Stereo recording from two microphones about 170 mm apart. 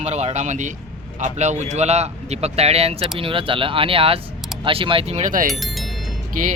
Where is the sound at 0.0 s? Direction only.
40° right (ahead or behind).